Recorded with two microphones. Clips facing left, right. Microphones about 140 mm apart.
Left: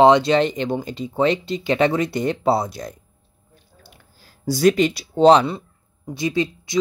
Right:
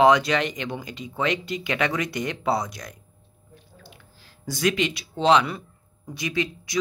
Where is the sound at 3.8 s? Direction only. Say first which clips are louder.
Right 1 dB; 40° left (ahead or behind).